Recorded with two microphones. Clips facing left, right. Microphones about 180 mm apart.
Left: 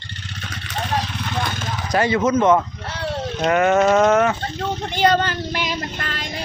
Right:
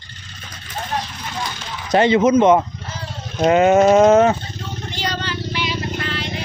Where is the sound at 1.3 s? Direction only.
50° left (ahead or behind).